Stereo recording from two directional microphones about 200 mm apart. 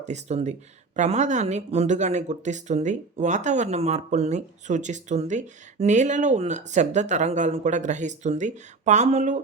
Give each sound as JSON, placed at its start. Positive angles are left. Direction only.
{"t": 0.0, "sound": "speech", "side_deg": -35}